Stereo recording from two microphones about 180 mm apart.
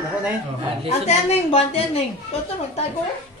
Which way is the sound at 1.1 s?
35° left (ahead or behind).